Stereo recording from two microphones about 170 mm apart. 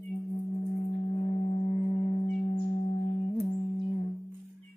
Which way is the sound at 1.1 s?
35° left (ahead or behind).